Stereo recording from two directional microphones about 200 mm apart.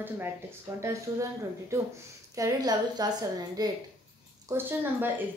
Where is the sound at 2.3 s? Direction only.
20° right (ahead or behind).